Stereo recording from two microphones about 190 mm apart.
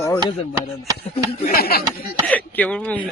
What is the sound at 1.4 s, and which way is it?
Speech, 50° left (ahead or behind).